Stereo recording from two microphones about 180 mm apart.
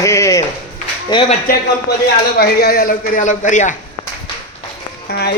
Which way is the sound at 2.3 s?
60° left (ahead or behind).